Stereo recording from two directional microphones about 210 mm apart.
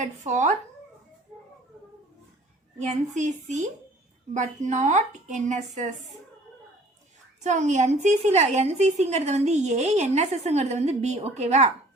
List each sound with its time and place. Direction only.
0.0 s a woman's voice: 35° right (ahead or behind)
2.7 s a woman's voice: 35° right (ahead or behind)
7.4 s a woman's voice: 35° right (ahead or behind)